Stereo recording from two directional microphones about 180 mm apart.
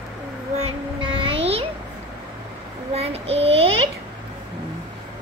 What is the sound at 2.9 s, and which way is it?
Child singing, 35° right (ahead or behind).